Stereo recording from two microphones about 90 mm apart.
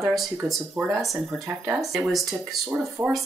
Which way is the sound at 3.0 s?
20° right (ahead or behind).